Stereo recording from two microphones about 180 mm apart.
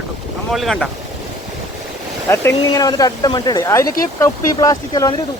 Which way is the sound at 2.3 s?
15° left (ahead or behind).